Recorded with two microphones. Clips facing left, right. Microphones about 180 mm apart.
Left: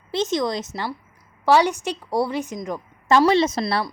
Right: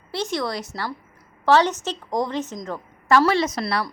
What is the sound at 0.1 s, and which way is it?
A woman's voice, 20° left (ahead or behind).